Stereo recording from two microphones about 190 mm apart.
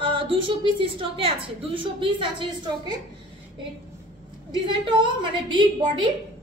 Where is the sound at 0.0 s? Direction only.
30° right (ahead or behind).